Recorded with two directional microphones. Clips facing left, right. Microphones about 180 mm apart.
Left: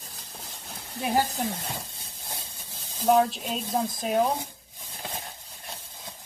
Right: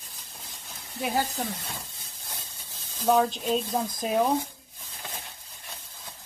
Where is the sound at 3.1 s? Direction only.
Centre (ahead or behind).